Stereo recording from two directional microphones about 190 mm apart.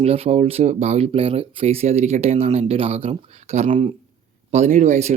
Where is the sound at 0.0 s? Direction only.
35° right (ahead or behind).